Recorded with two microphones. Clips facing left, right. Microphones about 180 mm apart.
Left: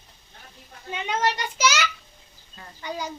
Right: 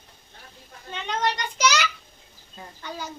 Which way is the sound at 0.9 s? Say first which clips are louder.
Left 1 dB; 10° left (ahead or behind).